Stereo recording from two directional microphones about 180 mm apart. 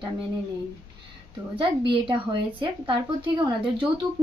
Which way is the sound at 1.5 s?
30° right (ahead or behind).